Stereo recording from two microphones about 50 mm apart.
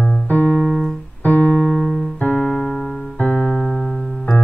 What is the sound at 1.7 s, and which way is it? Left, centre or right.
Keyboard, centre.